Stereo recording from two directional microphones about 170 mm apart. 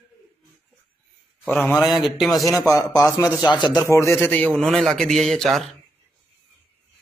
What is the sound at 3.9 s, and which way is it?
A man's voice, 15° left (ahead or behind).